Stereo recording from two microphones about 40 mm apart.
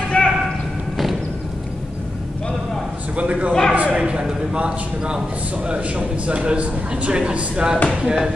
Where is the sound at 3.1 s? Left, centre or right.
Right.